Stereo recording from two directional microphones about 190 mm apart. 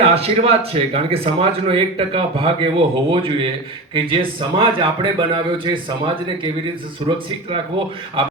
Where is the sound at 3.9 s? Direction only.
25° right (ahead or behind).